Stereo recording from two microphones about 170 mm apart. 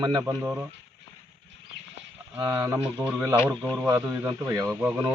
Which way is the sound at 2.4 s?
20° right (ahead or behind).